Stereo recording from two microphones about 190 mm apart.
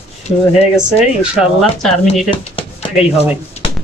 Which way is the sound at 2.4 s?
30° left (ahead or behind).